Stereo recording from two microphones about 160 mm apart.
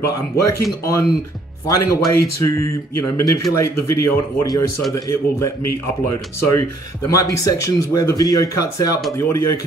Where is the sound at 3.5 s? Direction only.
20° left (ahead or behind).